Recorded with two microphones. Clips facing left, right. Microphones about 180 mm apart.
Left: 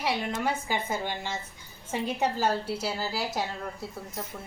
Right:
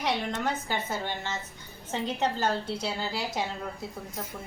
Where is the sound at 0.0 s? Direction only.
5° left (ahead or behind).